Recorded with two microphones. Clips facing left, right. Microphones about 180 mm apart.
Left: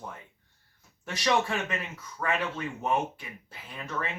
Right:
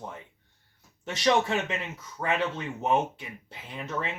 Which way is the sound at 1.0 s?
20° right (ahead or behind).